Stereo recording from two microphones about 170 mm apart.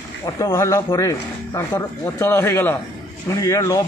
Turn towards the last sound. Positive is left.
turn(degrees=20)  # may be behind; listen again after turning